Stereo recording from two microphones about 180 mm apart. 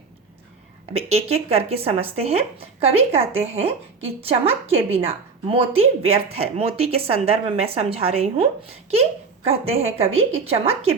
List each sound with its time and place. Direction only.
0.9 s speech: 35° right (ahead or behind)
9.5 s speech: 35° right (ahead or behind)